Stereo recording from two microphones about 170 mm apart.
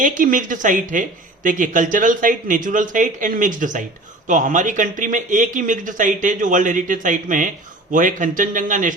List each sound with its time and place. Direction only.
0.0 s speech: 50° right (ahead or behind)